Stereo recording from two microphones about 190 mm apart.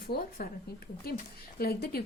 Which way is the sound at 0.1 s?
55° left (ahead or behind).